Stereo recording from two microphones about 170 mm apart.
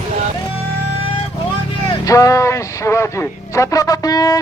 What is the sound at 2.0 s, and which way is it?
A man's voice, 20° left (ahead or behind).